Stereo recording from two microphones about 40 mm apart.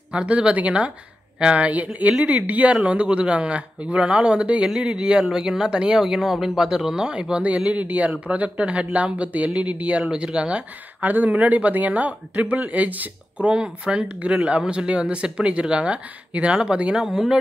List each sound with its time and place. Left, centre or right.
0.1 s speech: right
2.7 s speech: right
5.2 s speech: centre
5.9 s speech: centre
7.4 s speech: right
11.0 s speech: right
13.5 s speech: right